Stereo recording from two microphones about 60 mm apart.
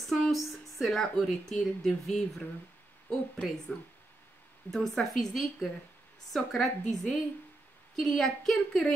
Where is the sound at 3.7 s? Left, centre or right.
Left.